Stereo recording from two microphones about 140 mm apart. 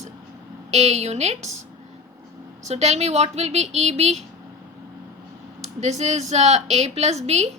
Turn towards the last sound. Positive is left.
turn(degrees=-50)  # may be behind; listen again after turning